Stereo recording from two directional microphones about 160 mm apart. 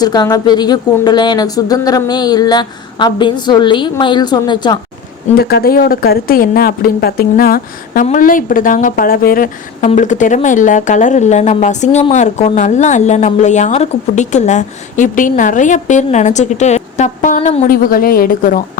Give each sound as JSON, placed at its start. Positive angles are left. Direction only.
{"t": 0.0, "sound": "speech", "side_deg": 25}
{"t": 5.4, "sound": "speech", "side_deg": 80}
{"t": 8.0, "sound": "a woman's voice", "side_deg": 55}
{"t": 17.7, "sound": "a woman's voice", "side_deg": 65}